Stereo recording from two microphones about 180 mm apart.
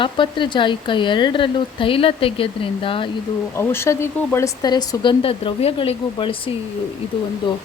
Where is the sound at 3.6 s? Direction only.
15° left (ahead or behind).